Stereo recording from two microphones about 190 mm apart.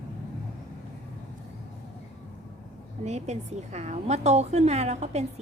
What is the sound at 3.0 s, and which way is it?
A woman's voice, 35° right (ahead or behind).